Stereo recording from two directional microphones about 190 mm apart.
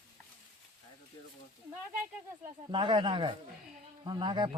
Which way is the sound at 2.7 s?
25° right (ahead or behind).